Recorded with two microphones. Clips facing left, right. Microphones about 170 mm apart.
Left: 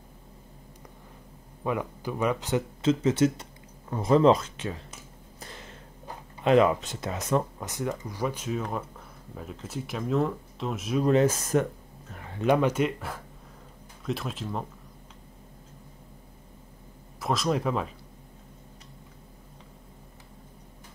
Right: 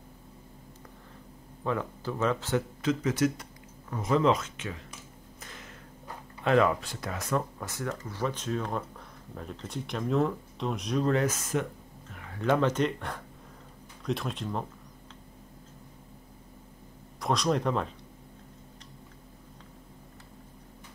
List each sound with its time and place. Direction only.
1.6 s speech: 15° left (ahead or behind); by 4.8 s 35° left (ahead or behind)
5.4 s a sound: 30° left (ahead or behind)
6.4 s speech: 20° left (ahead or behind); by 11.1 s 5° left (ahead or behind)
11.1 s speech: 20° left (ahead or behind)
11.3 s speech: 40° left (ahead or behind)
12.3 s speech: 20° left (ahead or behind); by 14.7 s centre (ahead or behind)
17.2 s speech: centre (ahead or behind)